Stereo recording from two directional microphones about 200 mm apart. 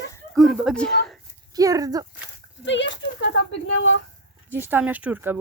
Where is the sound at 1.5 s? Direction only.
20° right (ahead or behind).